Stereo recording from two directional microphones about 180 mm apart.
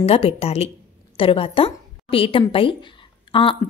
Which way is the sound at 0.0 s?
35° left (ahead or behind).